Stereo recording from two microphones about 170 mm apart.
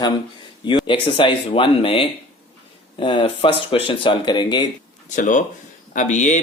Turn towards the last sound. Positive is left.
turn(degrees=45)  # may be behind; listen again after turning